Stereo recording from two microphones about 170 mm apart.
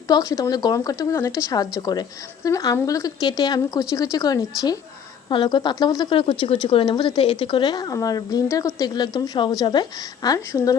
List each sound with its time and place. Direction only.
0.1 s speech: 20° left (ahead or behind)